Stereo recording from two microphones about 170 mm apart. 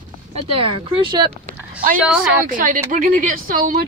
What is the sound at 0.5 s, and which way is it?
Speech, 30° right (ahead or behind).